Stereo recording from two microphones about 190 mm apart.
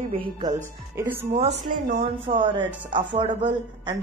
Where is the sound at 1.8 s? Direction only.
35° right (ahead or behind).